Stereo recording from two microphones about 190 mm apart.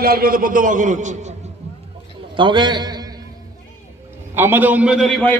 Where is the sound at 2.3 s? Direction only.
25° right (ahead or behind).